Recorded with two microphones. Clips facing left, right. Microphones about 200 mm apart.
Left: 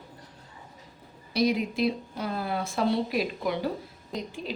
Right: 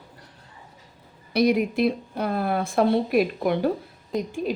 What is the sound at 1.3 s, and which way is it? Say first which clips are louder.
A woman's voice: right 5 dB; 60° right (ahead or behind).